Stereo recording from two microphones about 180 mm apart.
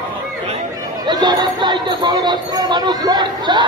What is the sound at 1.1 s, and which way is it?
A man's voice, 25° right (ahead or behind).